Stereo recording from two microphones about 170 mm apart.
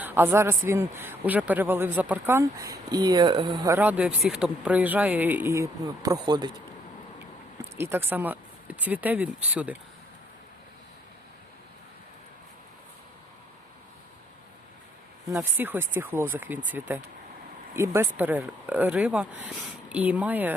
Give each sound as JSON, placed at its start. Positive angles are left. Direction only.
{"t": 0.0, "sound": "a man's voice", "side_deg": -10}
{"t": 3.8, "sound": "a man's voice", "side_deg": -10}
{"t": 7.8, "sound": "a man's voice", "side_deg": -15}
{"t": 15.3, "sound": "a man's voice", "side_deg": -10}